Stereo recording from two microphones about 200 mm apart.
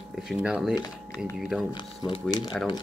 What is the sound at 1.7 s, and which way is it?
Speech, 25° left (ahead or behind).